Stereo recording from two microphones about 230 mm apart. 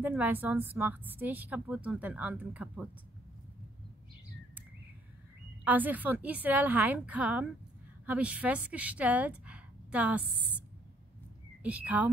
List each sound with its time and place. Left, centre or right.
0.0 s a woman's voice: centre
5.6 s a woman's voice: centre
11.6 s speech: centre